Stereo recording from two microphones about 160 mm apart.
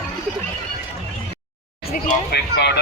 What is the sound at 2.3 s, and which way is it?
Speech, 90° left.